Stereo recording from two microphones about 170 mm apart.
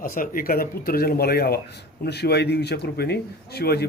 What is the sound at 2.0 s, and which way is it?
A man's voice, 75° left (ahead or behind).